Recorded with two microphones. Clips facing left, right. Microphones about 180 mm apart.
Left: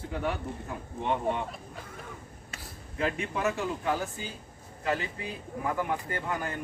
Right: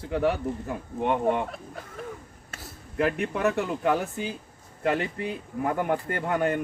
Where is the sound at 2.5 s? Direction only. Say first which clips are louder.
Right 4 dB; 60° right (ahead or behind).